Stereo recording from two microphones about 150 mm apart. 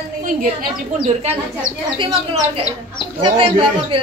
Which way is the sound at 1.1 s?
45° right (ahead or behind).